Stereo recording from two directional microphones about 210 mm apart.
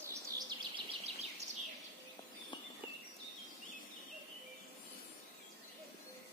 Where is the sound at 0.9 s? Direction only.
30° right (ahead or behind).